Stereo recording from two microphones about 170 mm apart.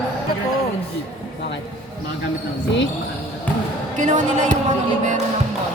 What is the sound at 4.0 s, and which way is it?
Speech, 45° right (ahead or behind).